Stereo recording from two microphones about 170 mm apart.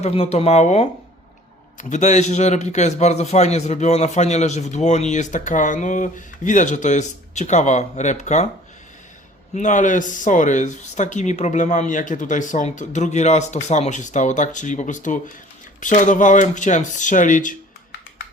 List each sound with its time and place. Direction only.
0.0 s a man's voice: 35° left (ahead or behind)
9.6 s a man's voice: 45° left (ahead or behind)